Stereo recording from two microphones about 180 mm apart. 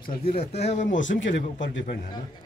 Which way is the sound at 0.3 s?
35° left (ahead or behind).